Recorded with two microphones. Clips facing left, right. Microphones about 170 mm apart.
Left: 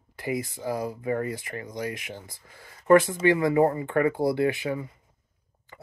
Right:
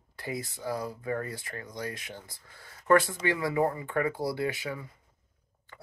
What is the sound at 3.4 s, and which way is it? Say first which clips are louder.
Speech: left 6 dB; 45° left (ahead or behind).